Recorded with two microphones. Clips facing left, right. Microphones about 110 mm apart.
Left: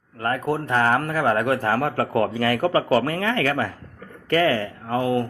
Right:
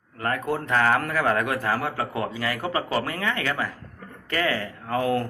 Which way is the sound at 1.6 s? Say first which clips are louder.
Left 4 dB; 45° left (ahead or behind).